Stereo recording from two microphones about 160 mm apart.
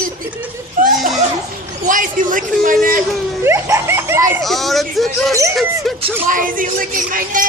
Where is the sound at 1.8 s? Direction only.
55° right (ahead or behind).